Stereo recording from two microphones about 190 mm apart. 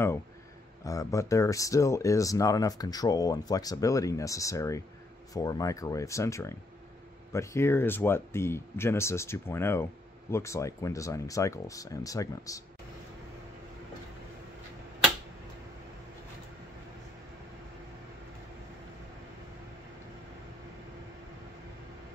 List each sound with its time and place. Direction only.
0.8 s speech: 15° left (ahead or behind)